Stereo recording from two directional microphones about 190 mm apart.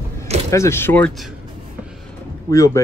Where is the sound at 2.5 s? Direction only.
15° left (ahead or behind).